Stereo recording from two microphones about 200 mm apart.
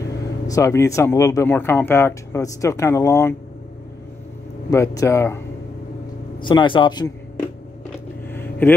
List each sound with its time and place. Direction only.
0.5 s speech: 15° left (ahead or behind)
4.6 s speech: 15° left (ahead or behind)
6.4 s speech: 25° left (ahead or behind)
8.3 s vehicle: 10° left (ahead or behind)